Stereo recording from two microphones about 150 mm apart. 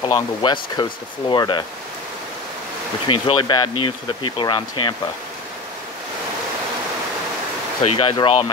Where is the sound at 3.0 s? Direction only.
35° left (ahead or behind).